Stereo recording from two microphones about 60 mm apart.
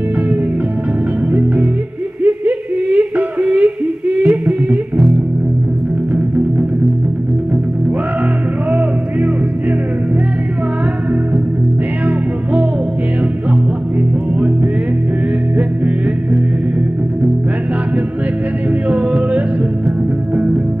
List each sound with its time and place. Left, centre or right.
2.2 s yodeling: right
18.9 s music: right